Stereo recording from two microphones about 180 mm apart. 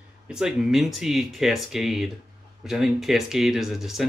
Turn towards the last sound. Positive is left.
turn(degrees=0)  # may be behind; listen again after turning